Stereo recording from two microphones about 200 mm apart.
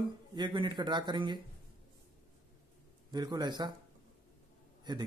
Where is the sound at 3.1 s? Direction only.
20° right (ahead or behind).